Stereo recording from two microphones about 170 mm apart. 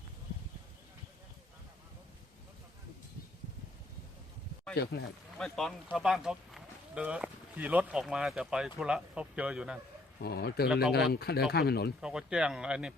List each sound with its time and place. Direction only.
4.7 s speech: 70° left (ahead or behind)
5.4 s speech: 5° left (ahead or behind)
10.2 s speech: 70° left (ahead or behind)
11.9 s speech: 5° right (ahead or behind)